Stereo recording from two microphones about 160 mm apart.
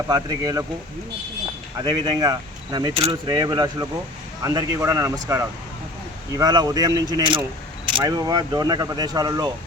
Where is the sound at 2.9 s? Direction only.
40° right (ahead or behind).